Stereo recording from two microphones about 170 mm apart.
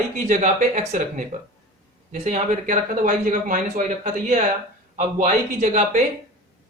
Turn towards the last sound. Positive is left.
turn(degrees=-40)  # may be behind; listen again after turning